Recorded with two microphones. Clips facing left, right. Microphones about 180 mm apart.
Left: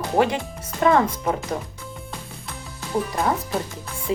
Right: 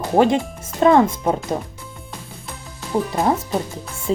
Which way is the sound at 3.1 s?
20° right (ahead or behind).